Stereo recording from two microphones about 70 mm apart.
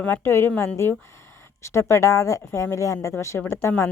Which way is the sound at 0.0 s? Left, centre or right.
Left.